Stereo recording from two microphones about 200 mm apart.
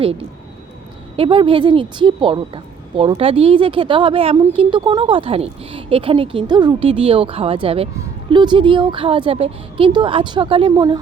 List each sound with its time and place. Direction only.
0.0 s speech: 30° right (ahead or behind)